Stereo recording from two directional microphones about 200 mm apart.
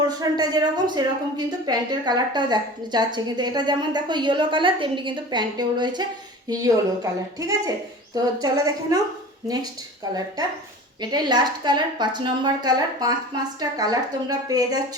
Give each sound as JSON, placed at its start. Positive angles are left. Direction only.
{"t": 0.1, "sound": "a woman's voice", "side_deg": -20}
{"t": 11.0, "sound": "a woman's voice", "side_deg": -20}